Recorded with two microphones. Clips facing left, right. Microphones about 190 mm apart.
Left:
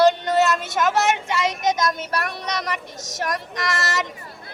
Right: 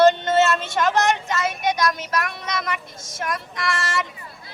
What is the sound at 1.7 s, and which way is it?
Speech, 25° left (ahead or behind).